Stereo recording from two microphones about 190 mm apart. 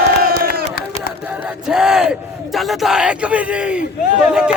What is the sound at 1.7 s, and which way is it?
A man's voice, 5° right (ahead or behind).